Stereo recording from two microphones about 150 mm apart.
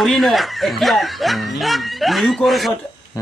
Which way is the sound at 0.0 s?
Centre (ahead or behind).